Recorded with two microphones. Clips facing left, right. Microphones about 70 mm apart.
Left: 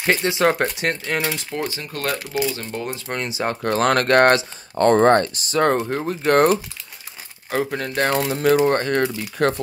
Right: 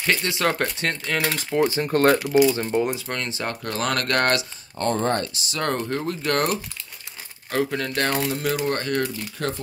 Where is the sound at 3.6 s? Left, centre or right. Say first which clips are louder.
Left 8 dB; left.